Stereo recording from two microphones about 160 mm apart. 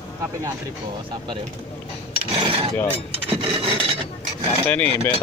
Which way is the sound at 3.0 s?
35° right (ahead or behind).